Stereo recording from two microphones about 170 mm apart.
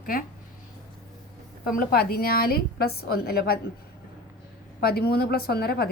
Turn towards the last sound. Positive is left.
turn(degrees=65)  # may be behind; listen again after turning